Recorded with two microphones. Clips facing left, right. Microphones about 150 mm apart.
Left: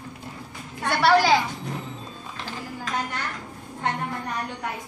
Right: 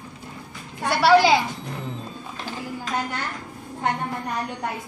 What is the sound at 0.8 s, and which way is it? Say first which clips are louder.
Speech: right 3 dB; 5° right (ahead or behind).